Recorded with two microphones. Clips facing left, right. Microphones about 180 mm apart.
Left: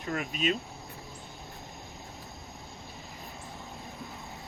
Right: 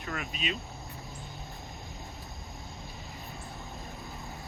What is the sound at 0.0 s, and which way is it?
Speech, 30° left (ahead or behind).